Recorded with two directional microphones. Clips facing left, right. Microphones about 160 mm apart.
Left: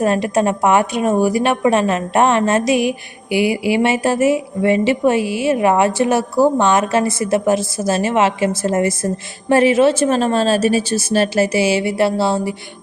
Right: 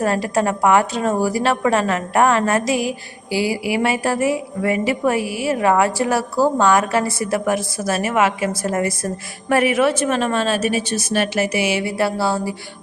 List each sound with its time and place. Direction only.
0.0 s a woman's voice: 20° left (ahead or behind)